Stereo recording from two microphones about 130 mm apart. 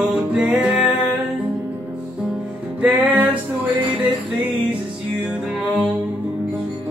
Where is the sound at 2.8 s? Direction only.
15° right (ahead or behind).